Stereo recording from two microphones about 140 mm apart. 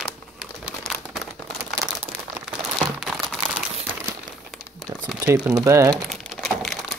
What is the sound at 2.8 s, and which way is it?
Crumpling, centre (ahead or behind).